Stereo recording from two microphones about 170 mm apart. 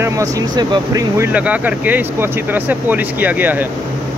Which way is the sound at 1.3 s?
10° right (ahead or behind).